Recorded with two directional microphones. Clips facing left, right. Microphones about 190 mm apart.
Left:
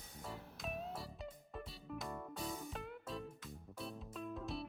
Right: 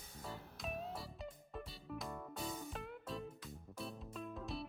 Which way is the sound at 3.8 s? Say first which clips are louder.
Even; centre (ahead or behind).